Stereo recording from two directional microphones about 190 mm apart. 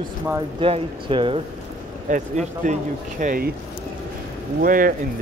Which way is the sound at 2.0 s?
40° right (ahead or behind).